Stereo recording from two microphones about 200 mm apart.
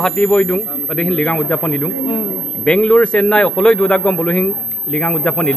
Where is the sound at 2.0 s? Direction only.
25° left (ahead or behind).